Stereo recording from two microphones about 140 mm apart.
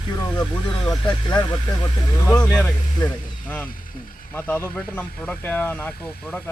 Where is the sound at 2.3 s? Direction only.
20° left (ahead or behind).